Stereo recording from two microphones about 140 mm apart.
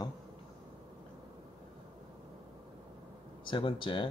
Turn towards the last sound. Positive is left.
turn(degrees=35)  # may be behind; listen again after turning